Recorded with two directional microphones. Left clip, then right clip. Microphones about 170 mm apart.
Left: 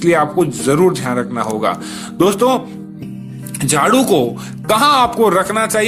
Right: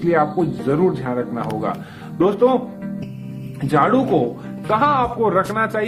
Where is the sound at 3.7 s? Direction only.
30° left (ahead or behind).